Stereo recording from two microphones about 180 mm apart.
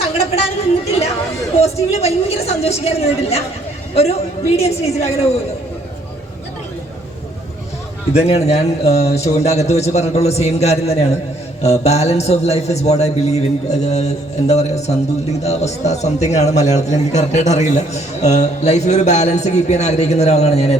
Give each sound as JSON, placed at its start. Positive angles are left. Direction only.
{"t": 0.0, "sound": "a sound", "side_deg": 35}
{"t": 1.5, "sound": "a woman's voice", "side_deg": 35}
{"t": 8.1, "sound": "a man's voice", "side_deg": 35}